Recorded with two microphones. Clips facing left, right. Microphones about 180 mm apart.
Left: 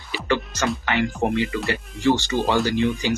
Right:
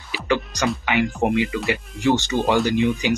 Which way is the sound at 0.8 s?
15° right (ahead or behind).